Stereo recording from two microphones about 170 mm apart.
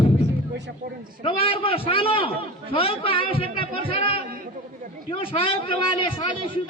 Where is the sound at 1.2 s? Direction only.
35° left (ahead or behind).